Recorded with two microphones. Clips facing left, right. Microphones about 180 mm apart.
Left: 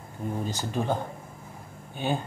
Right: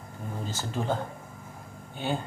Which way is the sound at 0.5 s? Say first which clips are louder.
Even; 15° left (ahead or behind).